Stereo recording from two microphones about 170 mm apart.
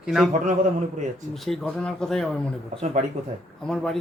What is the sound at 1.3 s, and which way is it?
A man's voice, centre (ahead or behind).